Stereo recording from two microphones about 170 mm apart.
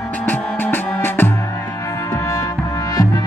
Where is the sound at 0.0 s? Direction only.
10° left (ahead or behind).